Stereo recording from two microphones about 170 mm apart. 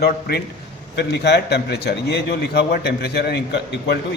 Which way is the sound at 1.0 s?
80° left.